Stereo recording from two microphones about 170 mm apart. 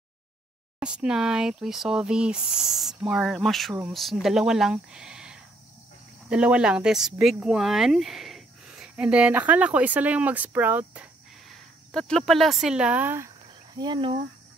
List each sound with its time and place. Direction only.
0.7 s speech: 5° right (ahead or behind)
11.4 s speech: 5° left (ahead or behind)
13.7 s speech: 25° right (ahead or behind)